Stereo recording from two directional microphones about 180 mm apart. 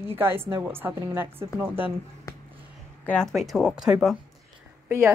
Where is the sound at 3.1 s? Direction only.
5° left (ahead or behind).